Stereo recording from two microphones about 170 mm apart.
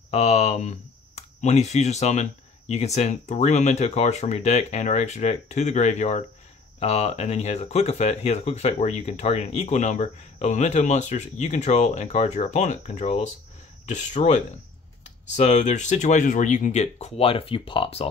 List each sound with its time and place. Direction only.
0.1 s speech: 40° left (ahead or behind)